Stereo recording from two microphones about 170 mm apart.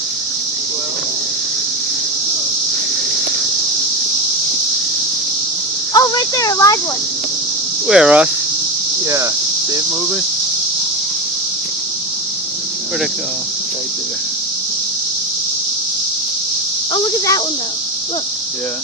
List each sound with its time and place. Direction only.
5.9 s speech: 20° left (ahead or behind)
7.9 s speech: 5° right (ahead or behind)
9.0 s cricket: 15° right (ahead or behind)
16.9 s speech: 25° left (ahead or behind)